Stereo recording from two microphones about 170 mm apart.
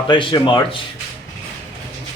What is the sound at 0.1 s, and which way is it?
Speech, 30° left (ahead or behind).